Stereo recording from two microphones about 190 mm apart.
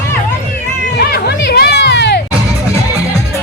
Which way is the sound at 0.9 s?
60° left (ahead or behind).